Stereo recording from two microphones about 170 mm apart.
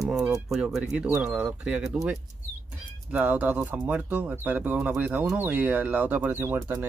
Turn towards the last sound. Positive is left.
turn(degrees=-10)  # may be behind; listen again after turning